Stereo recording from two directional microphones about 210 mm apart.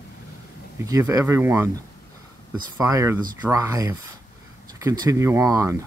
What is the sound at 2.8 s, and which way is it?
Speech, 15° right (ahead or behind).